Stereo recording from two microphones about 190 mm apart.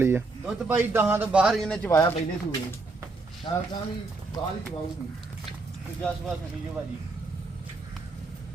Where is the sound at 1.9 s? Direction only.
15° left (ahead or behind).